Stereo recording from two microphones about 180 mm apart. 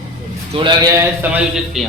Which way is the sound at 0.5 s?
25° right (ahead or behind).